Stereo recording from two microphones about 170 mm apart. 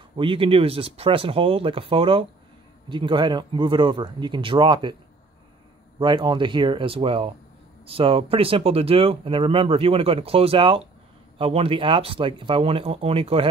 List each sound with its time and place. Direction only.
0.2 s speech: 30° right (ahead or behind)
5.9 s speech: 25° right (ahead or behind)